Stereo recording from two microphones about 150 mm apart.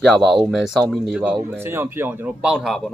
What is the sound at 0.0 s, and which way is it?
Speech, centre (ahead or behind).